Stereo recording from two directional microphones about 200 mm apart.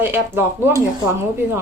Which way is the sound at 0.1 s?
10° right (ahead or behind).